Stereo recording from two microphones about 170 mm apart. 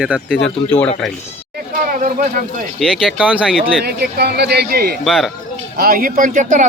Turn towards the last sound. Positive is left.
turn(degrees=-50)  # may be behind; listen again after turning